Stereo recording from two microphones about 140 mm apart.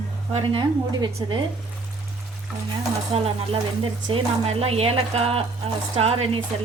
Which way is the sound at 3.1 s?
45° right (ahead or behind).